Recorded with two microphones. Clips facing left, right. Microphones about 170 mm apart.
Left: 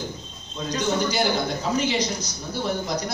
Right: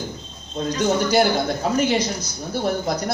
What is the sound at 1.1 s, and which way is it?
Speech, 50° right (ahead or behind).